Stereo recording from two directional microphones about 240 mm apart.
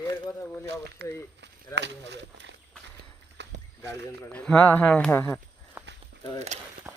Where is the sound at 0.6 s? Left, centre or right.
Right.